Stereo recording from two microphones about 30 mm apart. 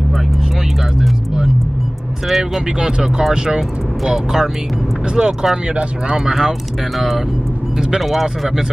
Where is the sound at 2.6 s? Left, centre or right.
Right.